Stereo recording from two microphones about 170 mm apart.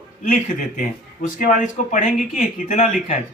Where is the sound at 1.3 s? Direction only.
50° left (ahead or behind).